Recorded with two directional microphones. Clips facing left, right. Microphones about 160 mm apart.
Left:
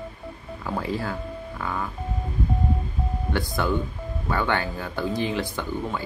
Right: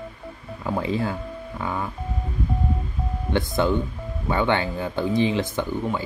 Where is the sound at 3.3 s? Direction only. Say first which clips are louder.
Right 4 dB; 20° right (ahead or behind).